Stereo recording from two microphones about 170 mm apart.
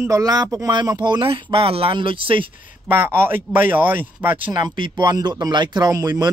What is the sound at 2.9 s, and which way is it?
A man's voice, 15° right (ahead or behind).